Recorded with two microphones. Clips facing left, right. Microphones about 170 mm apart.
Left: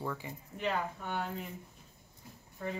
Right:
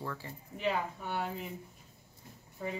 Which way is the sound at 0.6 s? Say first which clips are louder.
Right 1 dB; 5° right (ahead or behind).